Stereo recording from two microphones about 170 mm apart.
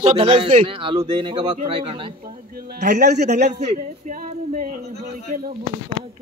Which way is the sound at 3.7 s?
45° right (ahead or behind).